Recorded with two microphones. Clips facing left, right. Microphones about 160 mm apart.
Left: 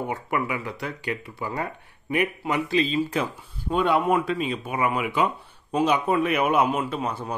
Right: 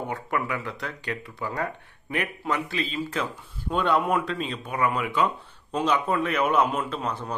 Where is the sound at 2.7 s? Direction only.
20° left (ahead or behind).